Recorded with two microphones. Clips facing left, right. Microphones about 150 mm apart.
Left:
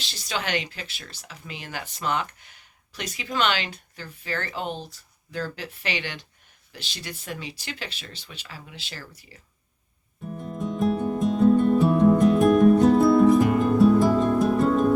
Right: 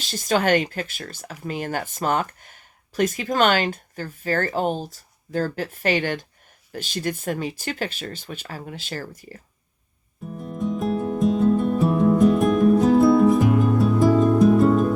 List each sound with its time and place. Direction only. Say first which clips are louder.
0.0 s speech: right 10 dB; 45° right (ahead or behind)
10.2 s music: right 3 dB; centre (ahead or behind)